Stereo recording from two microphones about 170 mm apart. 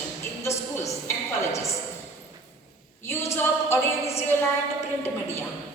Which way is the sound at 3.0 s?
15° left (ahead or behind).